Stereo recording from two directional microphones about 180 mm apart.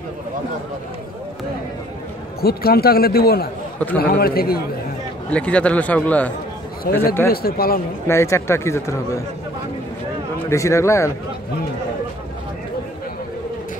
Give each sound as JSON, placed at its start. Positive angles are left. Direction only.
{"t": 2.4, "sound": "a man's voice", "side_deg": 60}
{"t": 5.3, "sound": "speech", "side_deg": 5}
{"t": 6.9, "sound": "a man's voice", "side_deg": 55}
{"t": 8.1, "sound": "speech", "side_deg": 15}
{"t": 10.5, "sound": "speech", "side_deg": 15}